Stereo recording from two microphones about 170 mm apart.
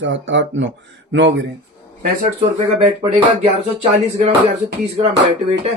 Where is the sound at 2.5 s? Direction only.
35° right (ahead or behind).